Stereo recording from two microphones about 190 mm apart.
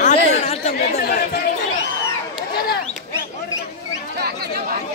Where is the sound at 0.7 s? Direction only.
55° left (ahead or behind).